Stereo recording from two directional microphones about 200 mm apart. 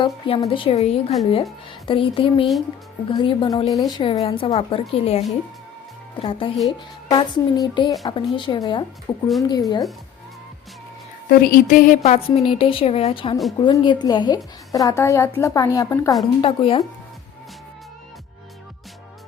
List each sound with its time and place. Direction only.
0.0 s a woman's voice: 25° left (ahead or behind)
11.3 s a woman's voice: 45° left (ahead or behind); by 16.1 s 15° left (ahead or behind)
16.4 s a woman's voice: 25° left (ahead or behind)